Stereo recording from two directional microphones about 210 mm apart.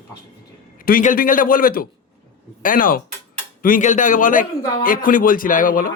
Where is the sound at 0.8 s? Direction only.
40° left (ahead or behind).